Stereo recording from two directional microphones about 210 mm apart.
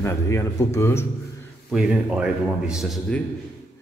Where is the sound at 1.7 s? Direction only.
5° right (ahead or behind).